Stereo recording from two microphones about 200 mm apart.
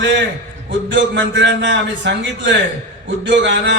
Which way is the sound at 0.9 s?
65° right (ahead or behind).